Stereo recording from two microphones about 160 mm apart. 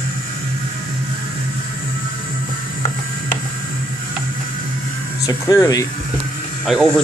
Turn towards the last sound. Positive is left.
turn(degrees=0)  # may be behind; listen again after turning